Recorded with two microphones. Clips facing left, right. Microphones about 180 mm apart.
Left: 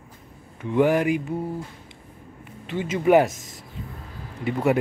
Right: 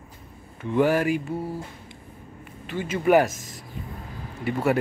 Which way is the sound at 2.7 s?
20° left (ahead or behind).